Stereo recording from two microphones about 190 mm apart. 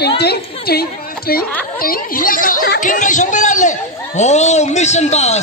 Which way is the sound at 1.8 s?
50° left (ahead or behind).